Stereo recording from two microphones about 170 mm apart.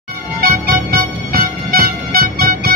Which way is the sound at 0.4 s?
60° right (ahead or behind).